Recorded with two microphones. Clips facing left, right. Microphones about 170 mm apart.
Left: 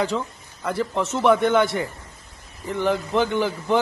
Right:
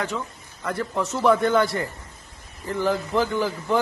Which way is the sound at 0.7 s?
20° left (ahead or behind).